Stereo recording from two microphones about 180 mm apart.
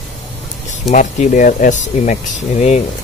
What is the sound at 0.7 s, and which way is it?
Speech, 40° left (ahead or behind).